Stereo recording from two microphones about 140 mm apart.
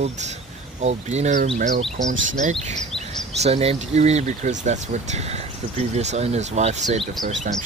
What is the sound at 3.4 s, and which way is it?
Speech, 50° right (ahead or behind).